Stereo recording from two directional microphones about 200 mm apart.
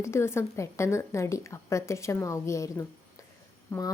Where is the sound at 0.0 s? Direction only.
15° left (ahead or behind).